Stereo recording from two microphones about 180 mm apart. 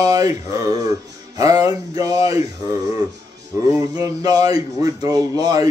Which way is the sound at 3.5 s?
15° right (ahead or behind).